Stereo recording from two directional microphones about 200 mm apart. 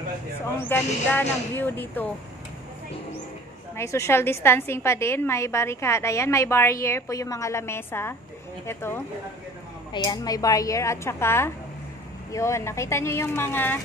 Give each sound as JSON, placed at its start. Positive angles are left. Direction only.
{"t": 0.6, "sound": "a woman's voice", "side_deg": 10}
{"t": 3.7, "sound": "a woman's voice", "side_deg": 15}
{"t": 10.0, "sound": "a woman's voice", "side_deg": 20}